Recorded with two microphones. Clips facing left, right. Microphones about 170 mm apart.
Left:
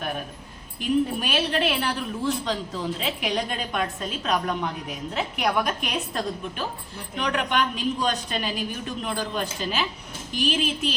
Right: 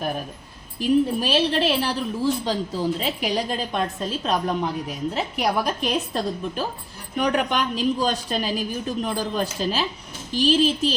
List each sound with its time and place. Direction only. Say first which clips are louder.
0.8 s a woman's voice: right 4 dB; 30° right (ahead or behind)